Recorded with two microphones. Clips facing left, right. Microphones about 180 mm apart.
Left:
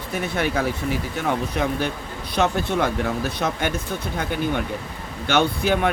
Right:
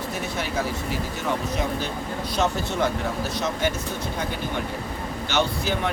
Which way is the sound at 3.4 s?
55° left (ahead or behind).